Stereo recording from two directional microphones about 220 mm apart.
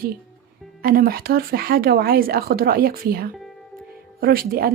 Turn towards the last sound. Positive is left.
turn(degrees=-40)  # may be behind; listen again after turning